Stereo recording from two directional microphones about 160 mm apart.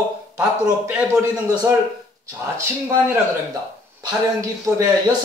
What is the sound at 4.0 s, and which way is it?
Speech, 20° right (ahead or behind).